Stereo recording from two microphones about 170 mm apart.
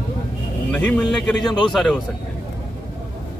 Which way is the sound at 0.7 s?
5° left (ahead or behind).